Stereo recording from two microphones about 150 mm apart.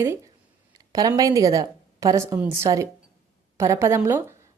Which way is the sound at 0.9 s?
25° right (ahead or behind).